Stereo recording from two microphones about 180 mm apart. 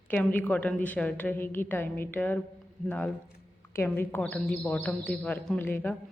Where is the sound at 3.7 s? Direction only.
10° left (ahead or behind).